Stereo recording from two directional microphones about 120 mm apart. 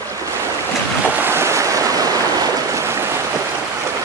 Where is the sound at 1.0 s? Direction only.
20° right (ahead or behind).